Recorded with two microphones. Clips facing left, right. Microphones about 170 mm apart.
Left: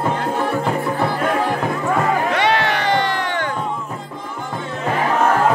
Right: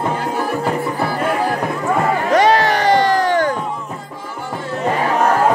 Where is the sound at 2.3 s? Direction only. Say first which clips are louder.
Right 5 dB; 40° right (ahead or behind).